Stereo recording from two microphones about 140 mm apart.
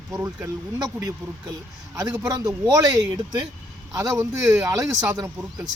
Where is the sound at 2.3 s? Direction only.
25° right (ahead or behind).